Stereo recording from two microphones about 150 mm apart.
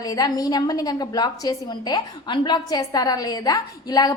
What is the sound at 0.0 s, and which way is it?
A woman's voice, 25° left (ahead or behind).